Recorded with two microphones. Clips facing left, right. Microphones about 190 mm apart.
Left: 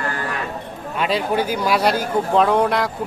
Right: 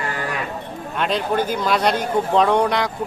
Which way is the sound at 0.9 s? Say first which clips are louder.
Left 1 dB; 5° left (ahead or behind).